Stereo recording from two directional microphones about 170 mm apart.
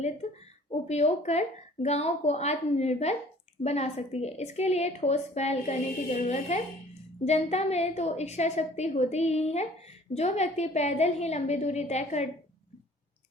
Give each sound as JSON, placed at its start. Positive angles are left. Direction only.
{"t": 0.7, "sound": "a woman's voice", "side_deg": 40}